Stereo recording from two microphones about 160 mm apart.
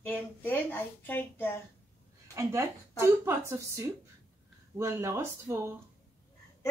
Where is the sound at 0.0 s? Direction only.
10° left (ahead or behind).